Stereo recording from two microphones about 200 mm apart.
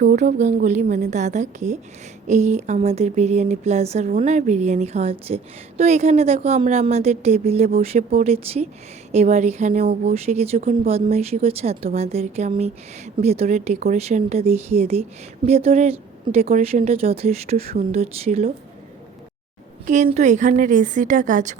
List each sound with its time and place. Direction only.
0.0 s speech: 40° right (ahead or behind)
19.9 s speech: 35° right (ahead or behind)